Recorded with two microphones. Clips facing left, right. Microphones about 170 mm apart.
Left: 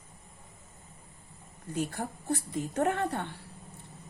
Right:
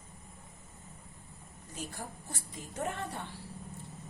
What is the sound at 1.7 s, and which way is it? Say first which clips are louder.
A woman's voice: left 9 dB; 60° left (ahead or behind).